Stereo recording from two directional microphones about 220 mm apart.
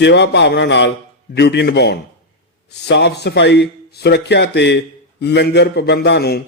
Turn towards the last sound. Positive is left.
turn(degrees=50)  # may be behind; listen again after turning